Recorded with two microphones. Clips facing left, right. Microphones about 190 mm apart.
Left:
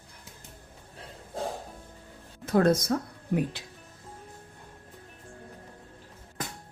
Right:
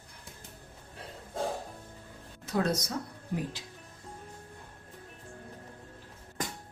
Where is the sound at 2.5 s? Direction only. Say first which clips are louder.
Left 8 dB; 55° left (ahead or behind).